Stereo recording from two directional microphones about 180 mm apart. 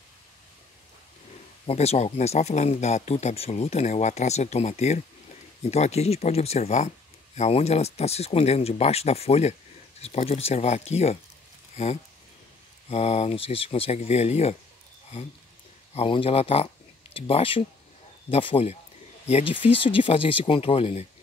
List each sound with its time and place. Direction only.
1.7 s speech: 35° left (ahead or behind)
15.9 s speech: 35° left (ahead or behind)